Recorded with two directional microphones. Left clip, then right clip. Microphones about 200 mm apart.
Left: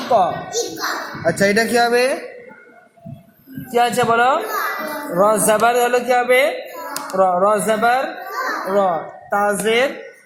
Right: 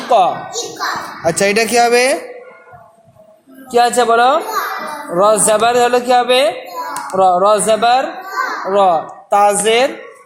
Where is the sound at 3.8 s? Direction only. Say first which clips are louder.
Right 4 dB; 40° right (ahead or behind).